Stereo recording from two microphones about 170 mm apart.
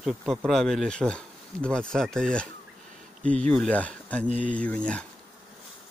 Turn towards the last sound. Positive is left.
turn(degrees=5)  # may be behind; listen again after turning